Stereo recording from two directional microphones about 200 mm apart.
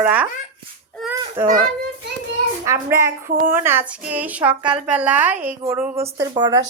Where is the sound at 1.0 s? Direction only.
Centre (ahead or behind).